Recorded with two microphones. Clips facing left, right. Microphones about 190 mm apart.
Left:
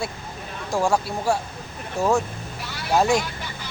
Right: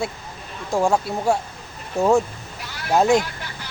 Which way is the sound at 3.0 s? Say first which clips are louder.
Right 3 dB; 20° right (ahead or behind).